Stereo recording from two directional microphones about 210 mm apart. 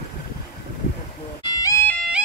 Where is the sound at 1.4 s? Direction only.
15° left (ahead or behind).